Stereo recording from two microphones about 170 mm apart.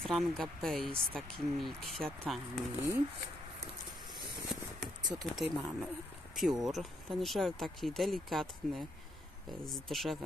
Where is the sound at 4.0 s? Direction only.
25° right (ahead or behind).